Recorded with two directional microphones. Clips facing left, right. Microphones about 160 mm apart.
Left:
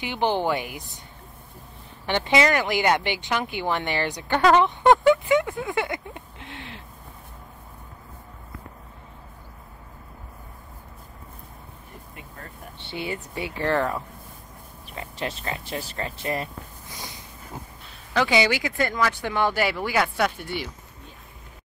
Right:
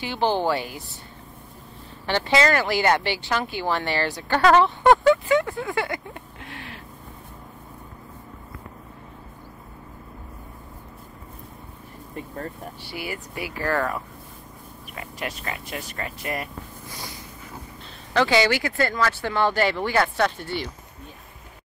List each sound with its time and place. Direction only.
0.0 s speech: 20° left (ahead or behind)
2.0 s speech: 20° left (ahead or behind)
12.8 s speech: 25° left (ahead or behind)
18.1 s speech: 10° left (ahead or behind)